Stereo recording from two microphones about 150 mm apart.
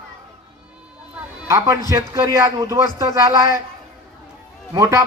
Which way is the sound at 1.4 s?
25° right (ahead or behind).